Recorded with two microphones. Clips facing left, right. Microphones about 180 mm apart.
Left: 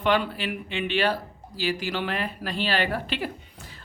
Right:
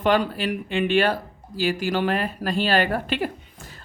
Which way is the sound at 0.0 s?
45° right (ahead or behind).